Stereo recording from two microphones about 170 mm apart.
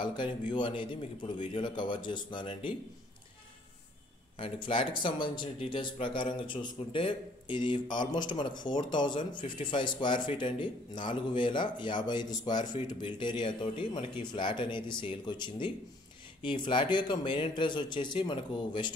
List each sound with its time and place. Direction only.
0.0 s speech: 30° left (ahead or behind)
4.4 s speech: 30° left (ahead or behind)